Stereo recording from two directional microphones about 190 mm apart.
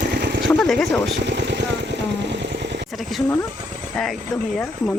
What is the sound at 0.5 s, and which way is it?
Speech, 5° left (ahead or behind).